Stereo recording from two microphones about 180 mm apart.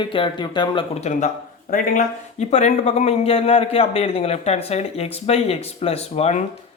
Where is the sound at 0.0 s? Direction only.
25° left (ahead or behind).